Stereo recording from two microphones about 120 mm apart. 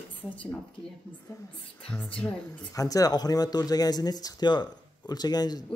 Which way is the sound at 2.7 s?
30° left (ahead or behind).